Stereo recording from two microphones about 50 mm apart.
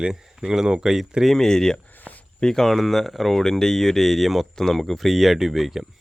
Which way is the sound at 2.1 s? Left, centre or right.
Left.